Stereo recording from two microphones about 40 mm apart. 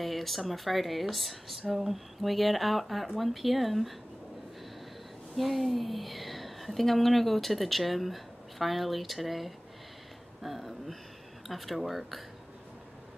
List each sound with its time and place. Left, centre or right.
0.0 s speech: centre
5.3 s a woman's voice: centre